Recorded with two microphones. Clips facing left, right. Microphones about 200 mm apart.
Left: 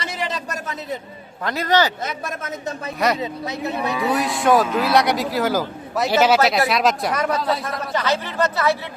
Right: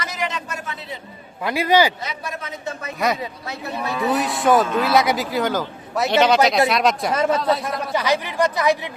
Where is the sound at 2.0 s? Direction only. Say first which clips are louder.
Left 2 dB; 50° left (ahead or behind).